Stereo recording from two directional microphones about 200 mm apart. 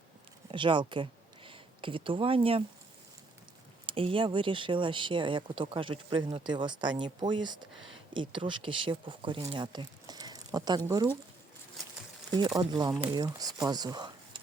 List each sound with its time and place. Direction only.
0.5 s speech: 25° right (ahead or behind)
3.8 s speech: 25° right (ahead or behind)
12.3 s speech: 20° right (ahead or behind)